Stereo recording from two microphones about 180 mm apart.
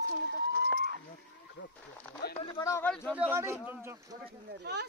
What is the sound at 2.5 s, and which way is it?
Speech, 15° left (ahead or behind).